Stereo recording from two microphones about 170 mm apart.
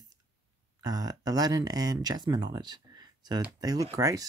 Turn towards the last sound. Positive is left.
turn(degrees=-20)  # may be behind; listen again after turning